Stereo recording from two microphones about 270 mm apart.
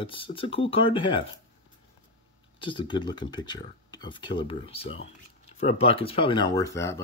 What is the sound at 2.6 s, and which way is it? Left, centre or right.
Speech, centre.